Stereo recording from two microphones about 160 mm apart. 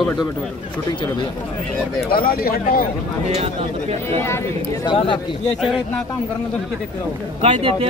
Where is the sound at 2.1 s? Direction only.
65° left (ahead or behind).